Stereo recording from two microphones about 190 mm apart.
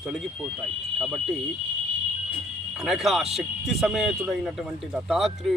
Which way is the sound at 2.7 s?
Centre (ahead or behind).